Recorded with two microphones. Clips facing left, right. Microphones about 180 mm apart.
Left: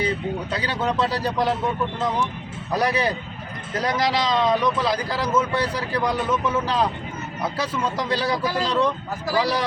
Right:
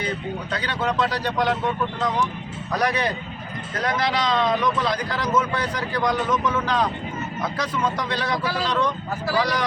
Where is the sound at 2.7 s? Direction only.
30° left (ahead or behind).